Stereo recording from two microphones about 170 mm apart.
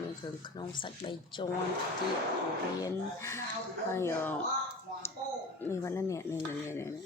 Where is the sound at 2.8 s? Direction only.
15° left (ahead or behind).